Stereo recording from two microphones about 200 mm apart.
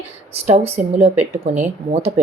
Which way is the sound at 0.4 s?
35° right (ahead or behind).